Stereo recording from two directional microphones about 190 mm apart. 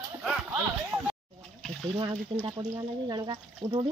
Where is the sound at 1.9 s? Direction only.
25° right (ahead or behind).